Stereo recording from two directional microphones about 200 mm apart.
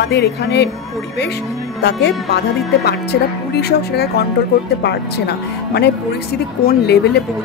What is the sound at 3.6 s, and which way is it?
Speech, 50° left (ahead or behind).